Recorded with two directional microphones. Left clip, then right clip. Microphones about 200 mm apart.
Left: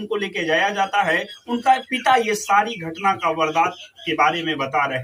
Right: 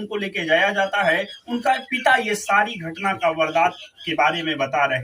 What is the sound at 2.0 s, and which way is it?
Speech, centre (ahead or behind).